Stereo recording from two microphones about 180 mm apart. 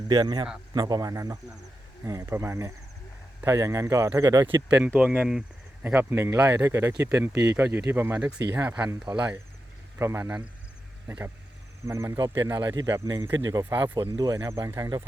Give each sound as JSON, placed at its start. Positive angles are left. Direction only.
{"t": 0.1, "sound": "speech", "side_deg": -25}
{"t": 4.7, "sound": "speech", "side_deg": -5}
{"t": 8.7, "sound": "speech", "side_deg": -10}
{"t": 9.0, "sound": "speech", "side_deg": -20}
{"t": 11.9, "sound": "speech", "side_deg": -15}